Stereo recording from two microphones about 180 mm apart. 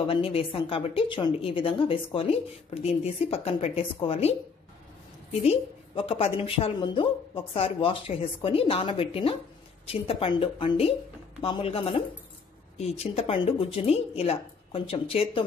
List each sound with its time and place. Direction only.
0.0 s a woman's voice: 30° left (ahead or behind)
5.4 s a woman's voice: 35° left (ahead or behind)